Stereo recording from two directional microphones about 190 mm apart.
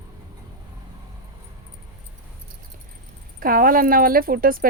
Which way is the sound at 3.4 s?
50° right (ahead or behind).